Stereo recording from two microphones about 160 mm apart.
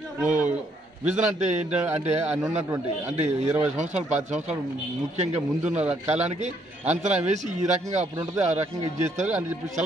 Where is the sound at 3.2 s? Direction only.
45° right (ahead or behind).